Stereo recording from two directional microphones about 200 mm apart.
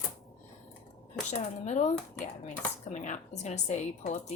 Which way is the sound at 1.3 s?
35° left (ahead or behind).